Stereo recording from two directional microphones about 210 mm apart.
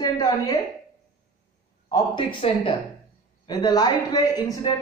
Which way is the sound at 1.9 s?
20° left (ahead or behind).